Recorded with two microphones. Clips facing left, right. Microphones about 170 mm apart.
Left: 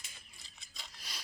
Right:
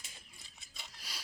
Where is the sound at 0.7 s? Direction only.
10° right (ahead or behind).